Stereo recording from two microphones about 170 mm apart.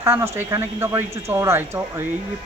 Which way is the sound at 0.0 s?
15° right (ahead or behind).